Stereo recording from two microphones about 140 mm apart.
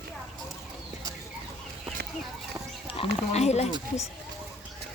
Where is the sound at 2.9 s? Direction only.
45° left (ahead or behind).